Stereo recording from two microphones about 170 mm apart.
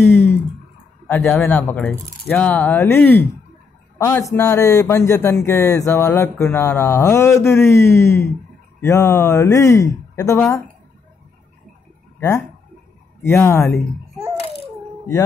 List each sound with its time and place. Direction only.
0.0 s a sound: 10° left (ahead or behind)
1.0 s speech: 10° left (ahead or behind)
4.4 s speech: 15° left (ahead or behind)
12.2 s speech: 15° left (ahead or behind)